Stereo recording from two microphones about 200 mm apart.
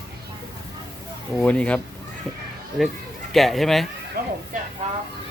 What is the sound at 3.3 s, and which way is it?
Speech, centre (ahead or behind).